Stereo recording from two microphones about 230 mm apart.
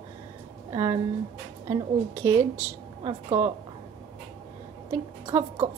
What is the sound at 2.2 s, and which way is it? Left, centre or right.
Speech, centre.